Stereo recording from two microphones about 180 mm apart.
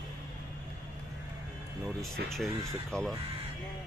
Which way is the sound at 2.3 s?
Centre (ahead or behind).